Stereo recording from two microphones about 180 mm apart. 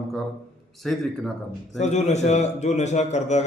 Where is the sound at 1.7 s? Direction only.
40° left (ahead or behind).